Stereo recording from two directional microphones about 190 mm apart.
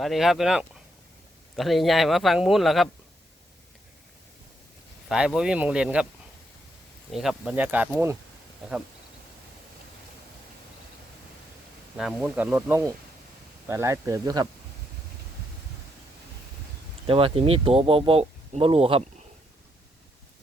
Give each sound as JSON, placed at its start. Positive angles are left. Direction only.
{"t": 0.0, "sound": "speech", "side_deg": 0}
{"t": 5.0, "sound": "speech", "side_deg": -5}
{"t": 7.1, "sound": "speech", "side_deg": 0}
{"t": 11.9, "sound": "speech", "side_deg": -5}
{"t": 17.1, "sound": "speech", "side_deg": -30}